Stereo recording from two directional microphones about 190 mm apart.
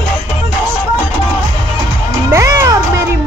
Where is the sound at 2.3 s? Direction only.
15° right (ahead or behind).